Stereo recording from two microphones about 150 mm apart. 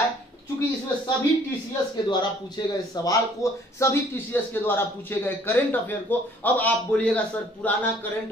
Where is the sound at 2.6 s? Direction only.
30° left (ahead or behind).